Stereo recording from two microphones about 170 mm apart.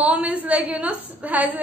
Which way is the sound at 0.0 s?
10° right (ahead or behind).